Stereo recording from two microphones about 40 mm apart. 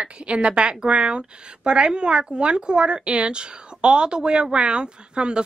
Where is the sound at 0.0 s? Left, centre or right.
Right.